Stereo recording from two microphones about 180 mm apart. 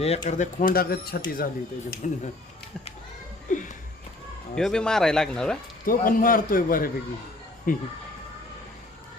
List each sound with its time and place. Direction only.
0.0 s speech: 35° left (ahead or behind)
3.5 s a sound: 45° left (ahead or behind)
4.5 s speech: 5° left (ahead or behind)
5.8 s speech: 50° left (ahead or behind)